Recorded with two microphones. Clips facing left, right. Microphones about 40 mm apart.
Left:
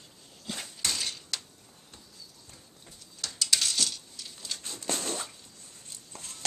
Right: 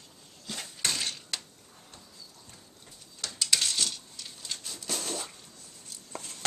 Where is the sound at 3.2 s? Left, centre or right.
Centre.